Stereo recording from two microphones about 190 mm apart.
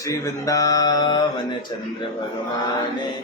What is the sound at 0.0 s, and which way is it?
A man's voice, 20° left (ahead or behind).